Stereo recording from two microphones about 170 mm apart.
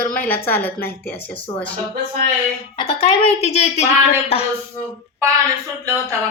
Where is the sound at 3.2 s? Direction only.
40° left (ahead or behind).